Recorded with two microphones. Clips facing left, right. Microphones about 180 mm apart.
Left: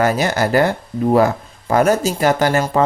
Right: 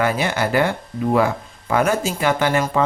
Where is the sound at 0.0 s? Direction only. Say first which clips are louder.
Left 3 dB; 40° left (ahead or behind).